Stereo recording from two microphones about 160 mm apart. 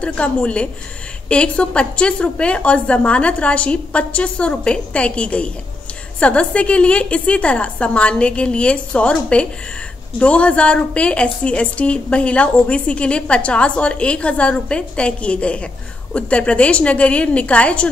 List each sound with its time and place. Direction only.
0.0 s a woman's voice: 5° left (ahead or behind)